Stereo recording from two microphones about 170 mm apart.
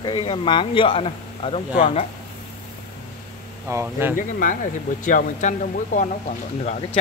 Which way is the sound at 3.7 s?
15° right (ahead or behind).